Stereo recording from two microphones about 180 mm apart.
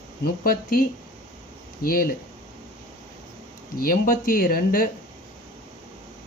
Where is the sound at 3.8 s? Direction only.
50° left (ahead or behind).